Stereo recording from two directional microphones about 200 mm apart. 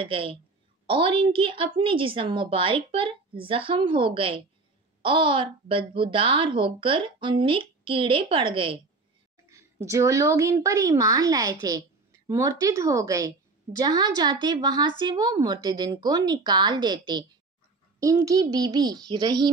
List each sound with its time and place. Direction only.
0.0 s a woman's voice: 25° right (ahead or behind)
9.5 s a woman's voice: 15° right (ahead or behind)